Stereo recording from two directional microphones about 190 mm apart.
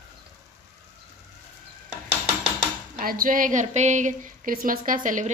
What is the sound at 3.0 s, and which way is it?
Speech, 45° right (ahead or behind).